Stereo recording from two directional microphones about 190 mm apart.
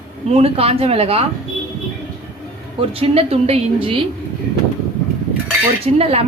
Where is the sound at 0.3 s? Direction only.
35° right (ahead or behind).